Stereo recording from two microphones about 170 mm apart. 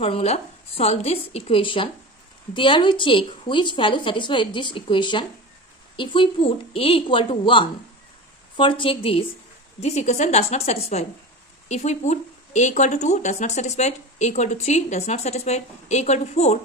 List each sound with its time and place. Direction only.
0.0 s a woman's voice: 35° left (ahead or behind)